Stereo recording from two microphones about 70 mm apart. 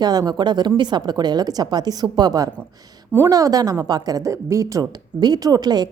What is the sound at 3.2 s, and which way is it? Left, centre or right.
A woman's voice, right.